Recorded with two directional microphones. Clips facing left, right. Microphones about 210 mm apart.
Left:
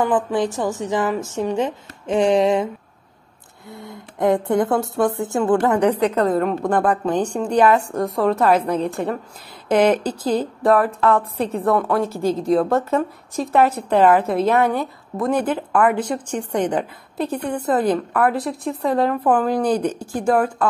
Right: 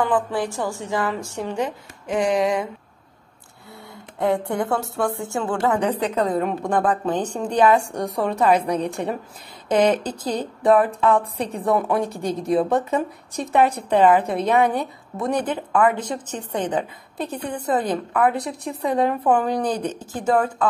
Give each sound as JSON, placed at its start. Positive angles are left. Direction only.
{"t": 0.1, "sound": "a woman's voice", "side_deg": 20}
{"t": 3.7, "sound": "a woman's voice", "side_deg": 15}
{"t": 6.1, "sound": "a woman's voice", "side_deg": -5}
{"t": 6.9, "sound": "a woman's voice", "side_deg": 10}
{"t": 11.1, "sound": "a woman's voice", "side_deg": -15}
{"t": 12.1, "sound": "a woman's voice", "side_deg": 0}
{"t": 12.6, "sound": "a woman's voice", "side_deg": -15}
{"t": 13.3, "sound": "a woman's voice", "side_deg": 0}